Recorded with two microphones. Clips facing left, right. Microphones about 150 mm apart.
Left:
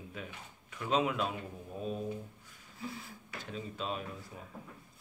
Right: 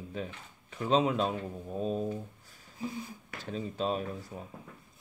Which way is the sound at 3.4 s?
35° right (ahead or behind).